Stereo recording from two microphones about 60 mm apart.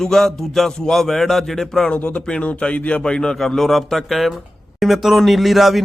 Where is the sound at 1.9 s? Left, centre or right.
Left.